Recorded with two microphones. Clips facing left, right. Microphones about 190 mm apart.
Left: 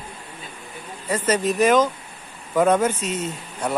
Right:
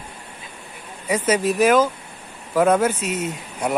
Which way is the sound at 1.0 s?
10° right (ahead or behind).